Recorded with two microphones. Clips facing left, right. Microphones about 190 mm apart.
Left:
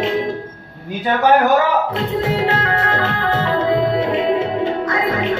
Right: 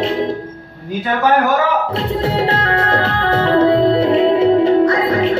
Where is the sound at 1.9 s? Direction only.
35° right (ahead or behind).